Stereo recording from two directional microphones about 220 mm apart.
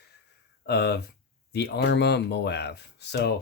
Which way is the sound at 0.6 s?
50° left (ahead or behind).